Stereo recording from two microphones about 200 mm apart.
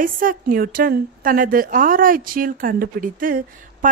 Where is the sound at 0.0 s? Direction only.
45° right (ahead or behind).